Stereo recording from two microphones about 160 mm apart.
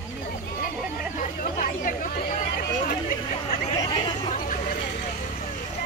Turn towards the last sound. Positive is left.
turn(degrees=30)  # may be behind; listen again after turning